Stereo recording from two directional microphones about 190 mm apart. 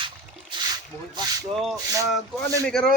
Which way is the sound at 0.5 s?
20° right (ahead or behind).